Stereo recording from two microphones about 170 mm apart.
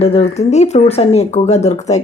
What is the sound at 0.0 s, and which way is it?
Speech, 35° left (ahead or behind).